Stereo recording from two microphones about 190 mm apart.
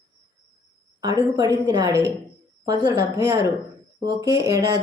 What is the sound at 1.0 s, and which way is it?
A woman's voice, 20° right (ahead or behind).